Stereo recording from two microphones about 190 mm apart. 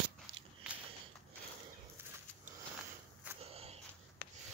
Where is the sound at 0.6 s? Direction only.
5° right (ahead or behind).